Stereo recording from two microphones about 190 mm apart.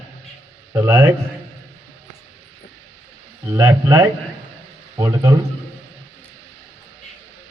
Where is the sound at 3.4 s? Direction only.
15° right (ahead or behind).